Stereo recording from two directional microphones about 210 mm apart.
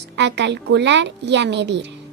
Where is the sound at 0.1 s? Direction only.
55° right (ahead or behind).